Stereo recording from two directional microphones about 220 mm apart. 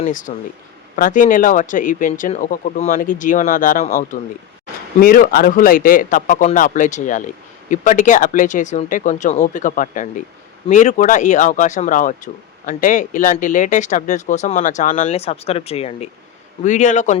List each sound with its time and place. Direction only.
0.0 s speech: 35° left (ahead or behind)